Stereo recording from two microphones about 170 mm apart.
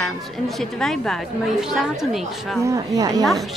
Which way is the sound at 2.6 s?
20° right (ahead or behind).